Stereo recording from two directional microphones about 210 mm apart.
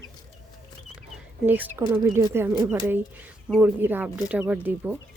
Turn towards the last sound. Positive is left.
turn(degrees=-10)  # may be behind; listen again after turning